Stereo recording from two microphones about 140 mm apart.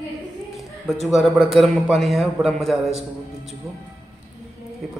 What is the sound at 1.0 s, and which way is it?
A man's voice, centre (ahead or behind).